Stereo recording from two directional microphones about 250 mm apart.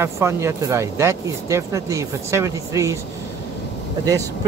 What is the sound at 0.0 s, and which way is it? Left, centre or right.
Speech, centre.